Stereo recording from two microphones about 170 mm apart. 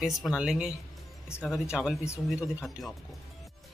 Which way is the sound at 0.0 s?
Centre (ahead or behind).